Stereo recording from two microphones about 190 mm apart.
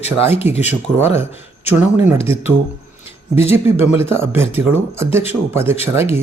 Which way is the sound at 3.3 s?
10° right (ahead or behind).